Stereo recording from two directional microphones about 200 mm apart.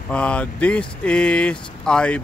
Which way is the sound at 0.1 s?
5° left (ahead or behind).